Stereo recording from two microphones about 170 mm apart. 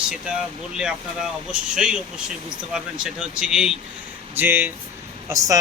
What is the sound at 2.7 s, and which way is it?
Speech, 5° right (ahead or behind).